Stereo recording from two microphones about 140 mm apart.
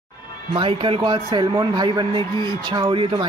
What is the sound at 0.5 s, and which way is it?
Speech, 40° right (ahead or behind).